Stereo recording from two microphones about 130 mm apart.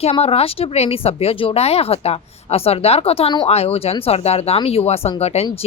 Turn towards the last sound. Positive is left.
turn(degrees=55)  # may be behind; listen again after turning